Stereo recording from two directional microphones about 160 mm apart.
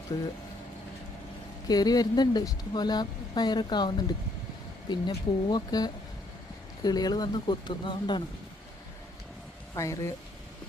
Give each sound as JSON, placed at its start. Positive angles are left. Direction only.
{"t": 0.1, "sound": "speech", "side_deg": 25}
{"t": 1.6, "sound": "speech", "side_deg": 25}
{"t": 9.7, "sound": "speech", "side_deg": 20}